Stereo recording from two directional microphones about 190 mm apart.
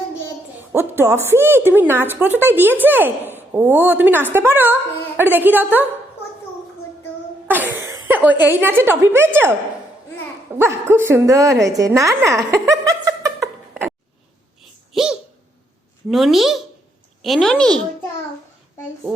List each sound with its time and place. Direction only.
0.7 s a woman's voice: 10° right (ahead or behind)
7.4 s speech: 10° right (ahead or behind)
10.6 s a woman's voice: 10° right (ahead or behind)
12.5 s chuckle: 15° right (ahead or behind)
14.9 s a child's voice: 5° right (ahead or behind)